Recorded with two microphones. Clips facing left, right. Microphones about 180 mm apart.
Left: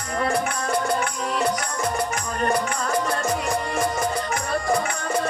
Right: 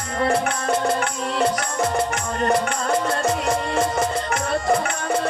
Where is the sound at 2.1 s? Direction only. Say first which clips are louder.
Right 3 dB; 25° right (ahead or behind).